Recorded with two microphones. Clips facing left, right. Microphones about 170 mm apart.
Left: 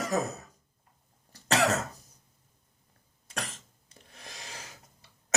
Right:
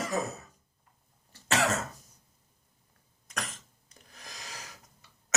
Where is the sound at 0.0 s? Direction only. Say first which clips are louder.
Left 2 dB; 40° left (ahead or behind).